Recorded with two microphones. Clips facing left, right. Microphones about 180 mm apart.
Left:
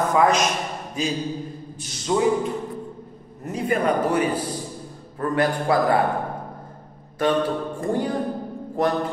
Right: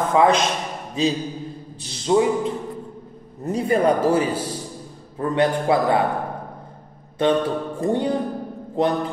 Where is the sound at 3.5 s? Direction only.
30° right (ahead or behind).